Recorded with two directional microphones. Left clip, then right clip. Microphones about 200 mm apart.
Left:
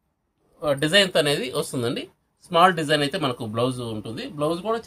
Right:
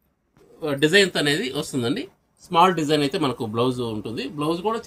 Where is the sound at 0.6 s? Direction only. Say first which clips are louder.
Right 1 dB; 50° left (ahead or behind).